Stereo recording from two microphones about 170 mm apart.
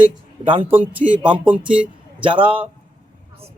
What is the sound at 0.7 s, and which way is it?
Speech, 10° right (ahead or behind).